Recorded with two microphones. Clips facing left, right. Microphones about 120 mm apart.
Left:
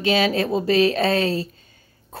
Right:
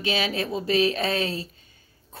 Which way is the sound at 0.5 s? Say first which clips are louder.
Left 3 dB; 40° left (ahead or behind).